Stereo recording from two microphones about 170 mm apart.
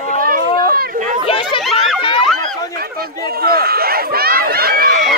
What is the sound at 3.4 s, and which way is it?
Run, 65° right (ahead or behind).